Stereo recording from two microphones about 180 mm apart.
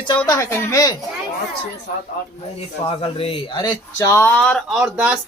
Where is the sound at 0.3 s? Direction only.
15° left (ahead or behind).